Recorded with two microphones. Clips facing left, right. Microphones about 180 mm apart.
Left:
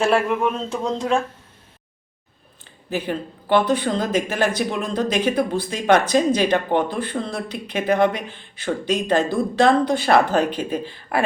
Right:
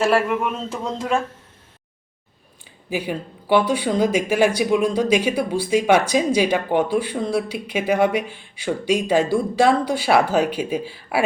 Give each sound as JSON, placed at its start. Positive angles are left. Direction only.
{"t": 0.0, "sound": "speech", "side_deg": -5}
{"t": 2.6, "sound": "speech", "side_deg": -10}